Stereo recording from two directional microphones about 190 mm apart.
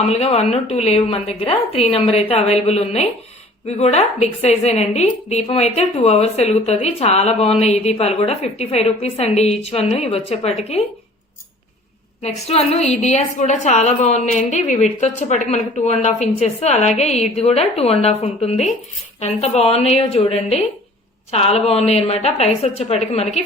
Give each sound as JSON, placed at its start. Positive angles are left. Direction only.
{"t": 0.1, "sound": "a woman's voice", "side_deg": 35}
{"t": 12.2, "sound": "a woman's voice", "side_deg": 35}